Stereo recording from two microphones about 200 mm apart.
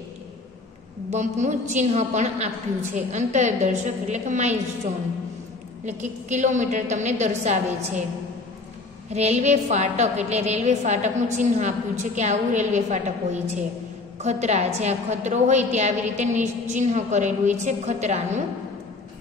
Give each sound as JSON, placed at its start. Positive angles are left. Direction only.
{"t": 1.1, "sound": "a woman's voice", "side_deg": -35}
{"t": 9.1, "sound": "a woman's voice", "side_deg": -35}